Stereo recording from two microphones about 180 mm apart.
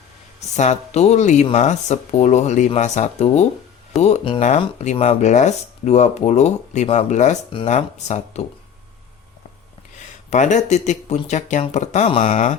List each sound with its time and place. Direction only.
0.3 s speech: 40° left (ahead or behind)
10.2 s speech: 40° left (ahead or behind)